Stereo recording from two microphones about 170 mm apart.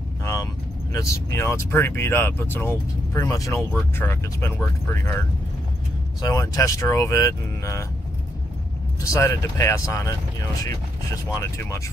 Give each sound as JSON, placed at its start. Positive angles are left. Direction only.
{"t": 0.2, "sound": "vehicle", "side_deg": 20}
{"t": 0.9, "sound": "speech", "side_deg": 15}
{"t": 6.2, "sound": "speech", "side_deg": 20}
{"t": 9.0, "sound": "speech", "side_deg": 20}